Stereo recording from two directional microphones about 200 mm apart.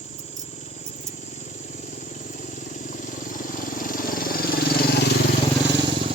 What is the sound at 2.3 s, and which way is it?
Vehicle, 40° left (ahead or behind).